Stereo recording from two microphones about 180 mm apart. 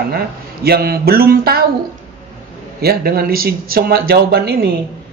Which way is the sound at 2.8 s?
60° right (ahead or behind).